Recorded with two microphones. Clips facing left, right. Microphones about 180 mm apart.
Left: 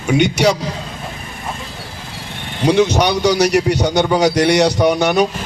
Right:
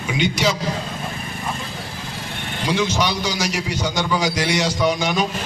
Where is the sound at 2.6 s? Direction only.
70° left (ahead or behind).